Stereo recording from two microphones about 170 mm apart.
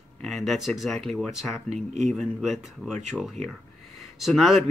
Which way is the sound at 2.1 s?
Centre (ahead or behind).